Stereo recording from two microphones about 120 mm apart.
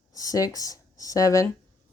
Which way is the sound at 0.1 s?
30° left (ahead or behind).